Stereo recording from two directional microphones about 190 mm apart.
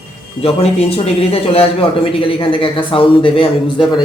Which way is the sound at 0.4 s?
30° left (ahead or behind).